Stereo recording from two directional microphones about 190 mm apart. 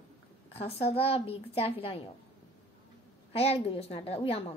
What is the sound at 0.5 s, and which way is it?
A child's voice, 30° left (ahead or behind).